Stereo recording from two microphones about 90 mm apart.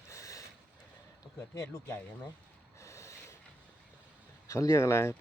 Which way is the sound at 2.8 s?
35° left (ahead or behind).